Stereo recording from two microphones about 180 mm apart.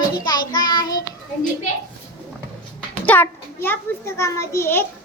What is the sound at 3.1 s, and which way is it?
A child's voice, 10° left (ahead or behind).